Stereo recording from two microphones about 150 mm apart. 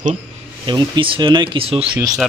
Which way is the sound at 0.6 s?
30° right (ahead or behind).